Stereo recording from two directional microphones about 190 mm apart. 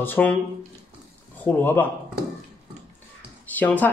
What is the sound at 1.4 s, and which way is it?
Speech, 10° left (ahead or behind).